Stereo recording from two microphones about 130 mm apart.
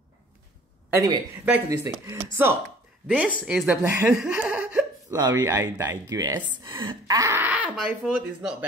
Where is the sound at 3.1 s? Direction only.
5° right (ahead or behind).